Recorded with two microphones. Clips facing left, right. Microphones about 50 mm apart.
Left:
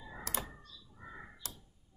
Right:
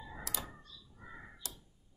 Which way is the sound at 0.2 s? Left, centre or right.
Left.